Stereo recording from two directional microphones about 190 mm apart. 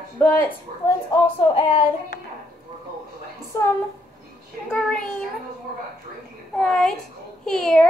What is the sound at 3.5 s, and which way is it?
A woman's voice, 15° left (ahead or behind).